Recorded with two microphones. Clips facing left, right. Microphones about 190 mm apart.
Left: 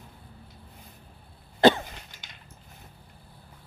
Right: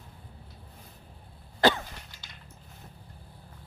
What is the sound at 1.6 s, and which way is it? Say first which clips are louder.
Cough: left 5 dB; 20° left (ahead or behind).